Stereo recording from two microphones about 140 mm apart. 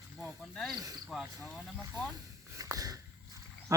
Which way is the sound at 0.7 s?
25° right (ahead or behind).